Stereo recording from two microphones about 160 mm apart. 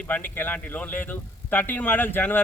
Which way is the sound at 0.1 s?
10° left (ahead or behind).